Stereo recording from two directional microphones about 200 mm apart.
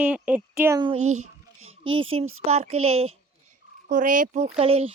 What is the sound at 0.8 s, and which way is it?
Speech, 30° right (ahead or behind).